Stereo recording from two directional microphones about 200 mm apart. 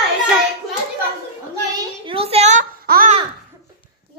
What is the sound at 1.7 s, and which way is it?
Child singing, 25° right (ahead or behind).